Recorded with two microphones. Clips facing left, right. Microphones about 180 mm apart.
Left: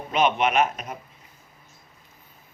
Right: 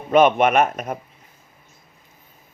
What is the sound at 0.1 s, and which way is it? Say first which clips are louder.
Speech: right 7 dB; 50° right (ahead or behind).